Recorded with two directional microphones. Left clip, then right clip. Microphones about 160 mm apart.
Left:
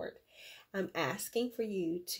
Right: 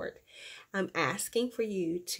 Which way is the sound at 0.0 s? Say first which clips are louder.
Right 4 dB; 25° right (ahead or behind).